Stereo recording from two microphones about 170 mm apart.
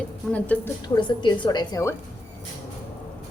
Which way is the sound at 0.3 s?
10° left (ahead or behind).